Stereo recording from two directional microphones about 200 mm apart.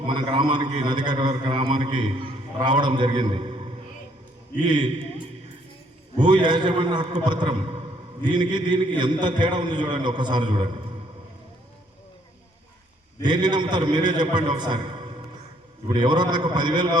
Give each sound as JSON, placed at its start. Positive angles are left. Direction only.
{"t": 0.1, "sound": "a man's voice", "side_deg": -25}
{"t": 3.2, "sound": "a sound", "side_deg": -25}
{"t": 6.2, "sound": "a man's voice", "side_deg": -25}
{"t": 13.2, "sound": "a man's voice", "side_deg": -20}